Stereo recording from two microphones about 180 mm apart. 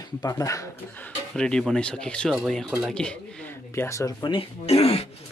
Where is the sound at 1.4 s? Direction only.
5° left (ahead or behind); by 5.1 s 35° left (ahead or behind).